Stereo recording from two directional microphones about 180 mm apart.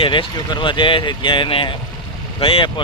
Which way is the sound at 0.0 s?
25° left (ahead or behind).